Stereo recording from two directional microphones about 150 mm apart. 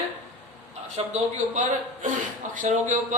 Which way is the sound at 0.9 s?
50° right (ahead or behind).